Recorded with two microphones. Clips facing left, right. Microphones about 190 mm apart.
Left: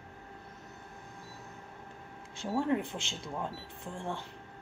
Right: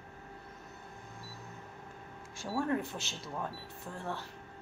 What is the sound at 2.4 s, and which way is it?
Speech, 20° left (ahead or behind).